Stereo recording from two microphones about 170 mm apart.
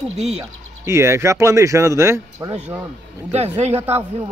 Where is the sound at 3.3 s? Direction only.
40° right (ahead or behind).